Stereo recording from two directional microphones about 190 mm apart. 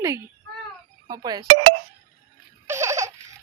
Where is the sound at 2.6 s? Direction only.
15° right (ahead or behind).